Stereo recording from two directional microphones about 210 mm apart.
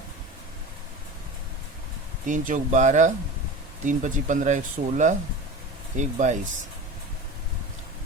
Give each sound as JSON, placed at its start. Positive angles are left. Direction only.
{"t": 2.2, "sound": "speech", "side_deg": -40}